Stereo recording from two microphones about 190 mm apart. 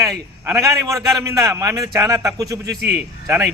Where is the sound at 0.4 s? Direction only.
15° right (ahead or behind).